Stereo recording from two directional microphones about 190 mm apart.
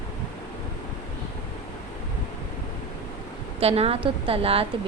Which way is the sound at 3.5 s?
30° right (ahead or behind).